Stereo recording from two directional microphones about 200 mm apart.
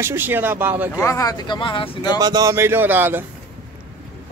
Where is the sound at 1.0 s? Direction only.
15° left (ahead or behind).